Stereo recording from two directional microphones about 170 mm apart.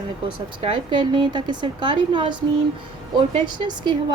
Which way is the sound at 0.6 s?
25° right (ahead or behind).